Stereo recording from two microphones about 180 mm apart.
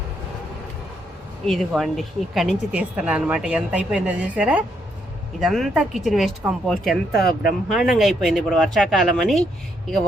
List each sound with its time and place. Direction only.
1.5 s speech: centre (ahead or behind)
7.2 s speech: 55° left (ahead or behind)
7.8 s speech: centre (ahead or behind)